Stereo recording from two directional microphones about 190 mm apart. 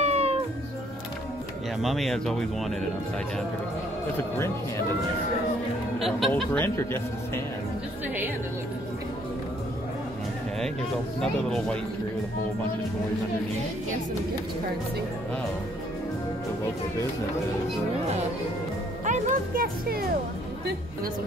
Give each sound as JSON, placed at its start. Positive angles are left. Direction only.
{"t": 0.0, "sound": "music", "side_deg": -35}
{"t": 1.8, "sound": "speech", "side_deg": 0}
{"t": 5.9, "sound": "speech", "side_deg": 0}
{"t": 6.6, "sound": "a man's voice", "side_deg": 10}
{"t": 11.1, "sound": "speech", "side_deg": 5}
{"t": 19.0, "sound": "speech", "side_deg": -40}